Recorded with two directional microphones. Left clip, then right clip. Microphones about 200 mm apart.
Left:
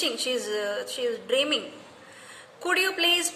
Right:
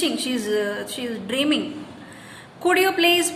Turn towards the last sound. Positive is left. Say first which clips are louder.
# right 5 dB
turn(degrees=15)  # may be behind; listen again after turning